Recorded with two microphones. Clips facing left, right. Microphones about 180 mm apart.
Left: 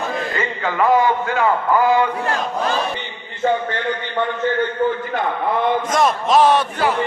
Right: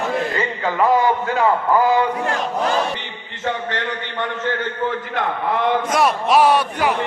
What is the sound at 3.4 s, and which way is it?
A man's voice, 90° right.